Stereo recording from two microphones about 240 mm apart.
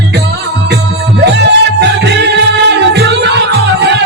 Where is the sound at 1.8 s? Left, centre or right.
Right.